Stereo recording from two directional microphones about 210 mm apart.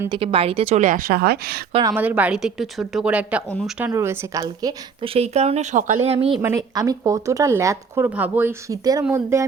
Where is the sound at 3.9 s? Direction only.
15° right (ahead or behind).